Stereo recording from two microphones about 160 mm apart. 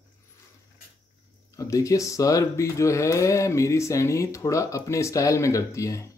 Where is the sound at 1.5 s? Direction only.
20° left (ahead or behind).